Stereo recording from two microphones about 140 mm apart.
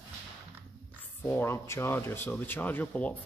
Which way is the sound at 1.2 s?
15° left (ahead or behind).